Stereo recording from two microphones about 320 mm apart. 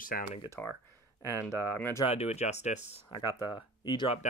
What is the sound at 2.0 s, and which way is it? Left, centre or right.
Speech, centre.